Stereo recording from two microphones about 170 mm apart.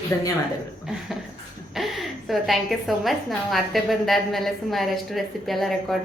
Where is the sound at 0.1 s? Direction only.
20° left (ahead or behind).